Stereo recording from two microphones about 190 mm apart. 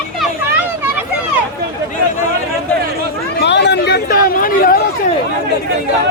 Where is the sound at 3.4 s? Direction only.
65° left (ahead or behind); by 4.8 s 50° left (ahead or behind).